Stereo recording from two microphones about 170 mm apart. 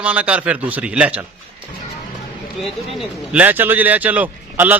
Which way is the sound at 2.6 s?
Centre (ahead or behind).